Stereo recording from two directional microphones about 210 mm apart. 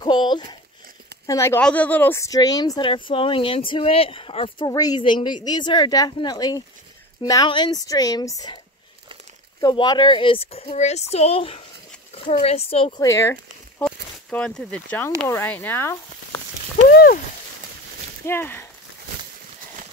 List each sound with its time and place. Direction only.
0.0 s a sound: 20° left (ahead or behind)
1.2 s speech: 15° left (ahead or behind)
9.6 s speech: 20° left (ahead or behind)
13.0 s speech: 15° left (ahead or behind)
16.9 s speech: 45° left (ahead or behind)
18.2 s speech: 10° left (ahead or behind)